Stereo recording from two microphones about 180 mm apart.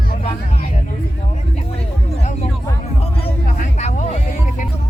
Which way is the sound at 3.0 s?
35° left (ahead or behind).